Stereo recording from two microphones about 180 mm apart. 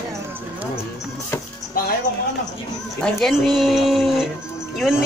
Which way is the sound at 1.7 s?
55° left (ahead or behind).